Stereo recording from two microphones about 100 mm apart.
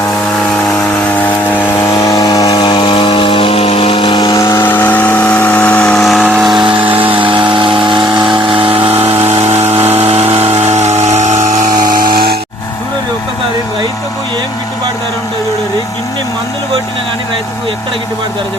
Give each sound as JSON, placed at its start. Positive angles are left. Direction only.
{"t": 1.2, "sound": "vehicle", "side_deg": 20}
{"t": 1.9, "sound": "power tool", "side_deg": 35}
{"t": 2.6, "sound": "chainsaw", "side_deg": 55}
{"t": 4.2, "sound": "chainsaw", "side_deg": 40}
{"t": 4.6, "sound": "vehicle", "side_deg": 20}
{"t": 6.4, "sound": "a sound", "side_deg": -5}
{"t": 6.7, "sound": "a sound", "side_deg": -60}
{"t": 8.8, "sound": "a sound", "side_deg": -80}
{"t": 9.3, "sound": "power tool", "side_deg": -90}